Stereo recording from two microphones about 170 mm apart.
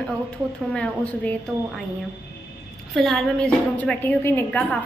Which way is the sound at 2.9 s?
Centre (ahead or behind).